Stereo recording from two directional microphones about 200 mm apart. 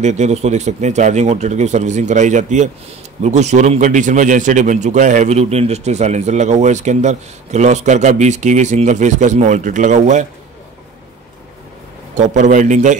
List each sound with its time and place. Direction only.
0.0 s a man's voice: 35° right (ahead or behind)
12.2 s a man's voice: 40° right (ahead or behind)